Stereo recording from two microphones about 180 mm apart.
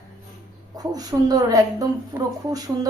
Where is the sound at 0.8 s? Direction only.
20° right (ahead or behind).